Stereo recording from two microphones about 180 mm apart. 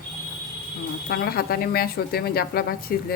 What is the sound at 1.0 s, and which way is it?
Speech, 60° left (ahead or behind).